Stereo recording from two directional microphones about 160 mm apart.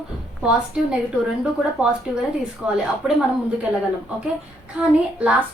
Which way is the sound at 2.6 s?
5° right (ahead or behind).